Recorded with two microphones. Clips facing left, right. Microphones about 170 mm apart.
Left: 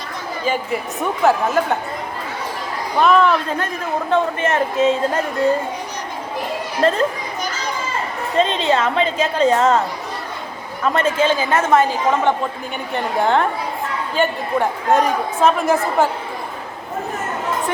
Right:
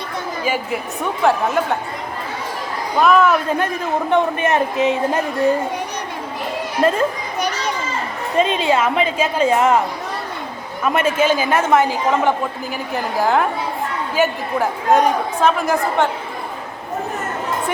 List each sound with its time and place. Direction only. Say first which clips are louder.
0.4 s speech: left 2 dB; 5° right (ahead or behind)
3.0 s speech: even; 5° right (ahead or behind)
4.1 s speech: right 1 dB; 15° right (ahead or behind)
8.4 s speech: right 1 dB; 10° right (ahead or behind)
10.8 s speech: right 1 dB; 10° right (ahead or behind)
12.9 s speech: even; 5° right (ahead or behind)